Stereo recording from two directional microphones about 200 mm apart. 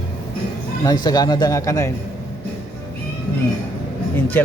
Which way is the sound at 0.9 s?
20° left (ahead or behind).